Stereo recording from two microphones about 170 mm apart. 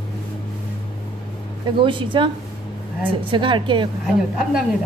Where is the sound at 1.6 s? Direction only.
30° right (ahead or behind).